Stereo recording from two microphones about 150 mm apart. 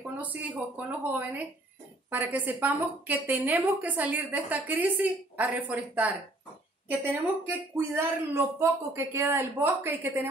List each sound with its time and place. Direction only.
0.2 s a woman's voice: 10° right (ahead or behind)